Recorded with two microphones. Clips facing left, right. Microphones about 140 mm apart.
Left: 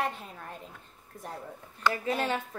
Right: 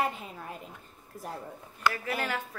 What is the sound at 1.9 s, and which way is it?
Speech, 20° left (ahead or behind).